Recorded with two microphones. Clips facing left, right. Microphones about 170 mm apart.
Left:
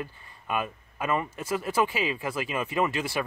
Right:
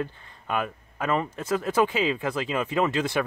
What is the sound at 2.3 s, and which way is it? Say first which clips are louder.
Speech: right 3 dB; 15° left (ahead or behind).